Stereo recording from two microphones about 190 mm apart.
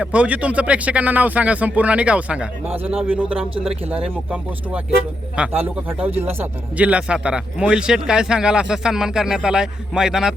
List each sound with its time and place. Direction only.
0.0 s speech: 5° right (ahead or behind)
3.5 s speech: 30° right (ahead or behind)
3.8 s a man's voice: 5° right (ahead or behind)